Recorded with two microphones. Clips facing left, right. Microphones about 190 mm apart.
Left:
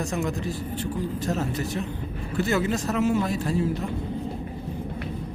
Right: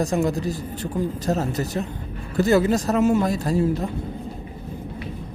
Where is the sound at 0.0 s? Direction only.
35° right (ahead or behind).